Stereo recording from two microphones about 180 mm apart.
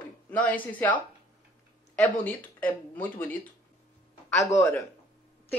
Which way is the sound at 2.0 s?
10° left (ahead or behind).